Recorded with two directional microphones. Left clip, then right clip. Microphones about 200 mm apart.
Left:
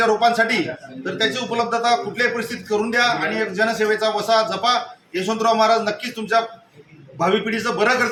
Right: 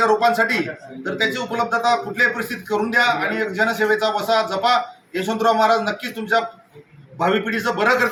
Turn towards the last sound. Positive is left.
turn(degrees=5)  # may be behind; listen again after turning